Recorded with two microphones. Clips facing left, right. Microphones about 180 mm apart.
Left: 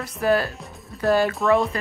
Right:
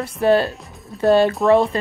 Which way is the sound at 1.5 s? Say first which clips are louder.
Right 4 dB; 30° right (ahead or behind).